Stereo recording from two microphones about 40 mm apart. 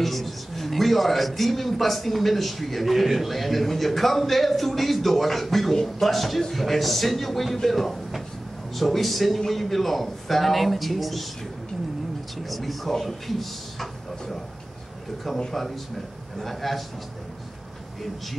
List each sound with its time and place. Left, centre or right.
0.0 s a man's voice: centre
12.4 s a man's voice: centre
15.2 s a man's voice: centre